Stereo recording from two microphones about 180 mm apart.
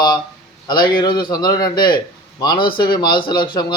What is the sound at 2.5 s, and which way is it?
Speech, 55° left (ahead or behind).